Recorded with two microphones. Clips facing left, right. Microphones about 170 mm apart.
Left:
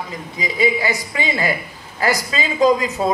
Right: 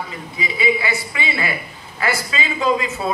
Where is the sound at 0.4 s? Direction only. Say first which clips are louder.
Left 2 dB; 40° left (ahead or behind).